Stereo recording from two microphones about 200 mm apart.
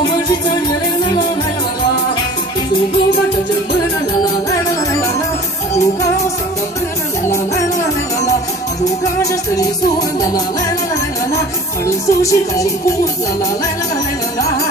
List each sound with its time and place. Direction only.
11.8 s music: 15° left (ahead or behind)